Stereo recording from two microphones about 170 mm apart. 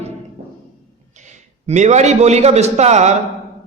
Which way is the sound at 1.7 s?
45° right (ahead or behind).